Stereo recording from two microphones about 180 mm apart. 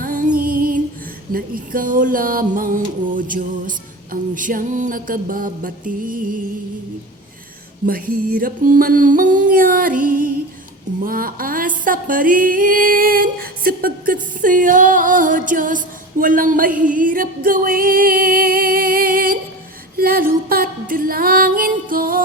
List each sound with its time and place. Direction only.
0.0 s music: 50° right (ahead or behind)
7.9 s music: 55° right (ahead or behind)